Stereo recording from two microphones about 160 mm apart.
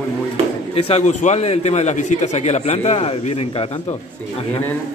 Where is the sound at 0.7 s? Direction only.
40° left (ahead or behind).